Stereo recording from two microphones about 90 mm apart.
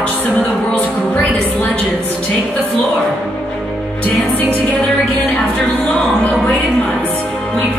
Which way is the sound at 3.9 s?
20° left (ahead or behind).